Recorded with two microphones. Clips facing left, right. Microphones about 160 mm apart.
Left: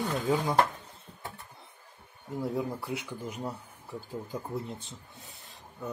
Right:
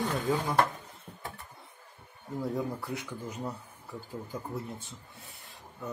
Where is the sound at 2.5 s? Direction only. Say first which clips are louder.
Left 1 dB; 20° left (ahead or behind).